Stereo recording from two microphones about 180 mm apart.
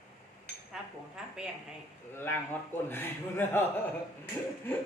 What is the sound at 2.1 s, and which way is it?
A man's voice, 10° left (ahead or behind).